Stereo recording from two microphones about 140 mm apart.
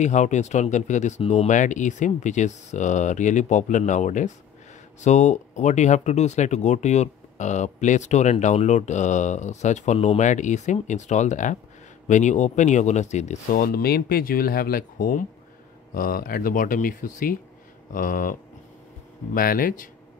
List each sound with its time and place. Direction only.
0.0 s speech: 60° left (ahead or behind)
1.5 s speech: 65° left (ahead or behind)
13.6 s speech: 90° left; by 18.4 s 75° left (ahead or behind)
19.3 s speech: 85° left